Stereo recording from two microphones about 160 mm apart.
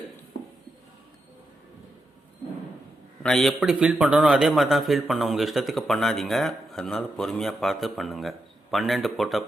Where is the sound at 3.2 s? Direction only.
Centre (ahead or behind).